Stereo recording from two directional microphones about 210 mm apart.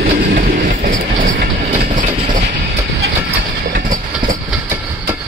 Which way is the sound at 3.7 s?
40° right (ahead or behind).